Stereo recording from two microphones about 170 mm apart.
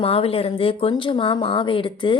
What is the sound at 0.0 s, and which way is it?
Speech, 35° left (ahead or behind).